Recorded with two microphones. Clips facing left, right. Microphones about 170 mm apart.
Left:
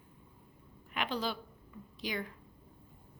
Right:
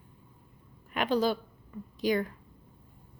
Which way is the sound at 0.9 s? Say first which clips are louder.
Right 9 dB; 45° right (ahead or behind).